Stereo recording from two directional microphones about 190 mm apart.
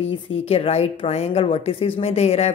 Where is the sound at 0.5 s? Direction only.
30° left (ahead or behind).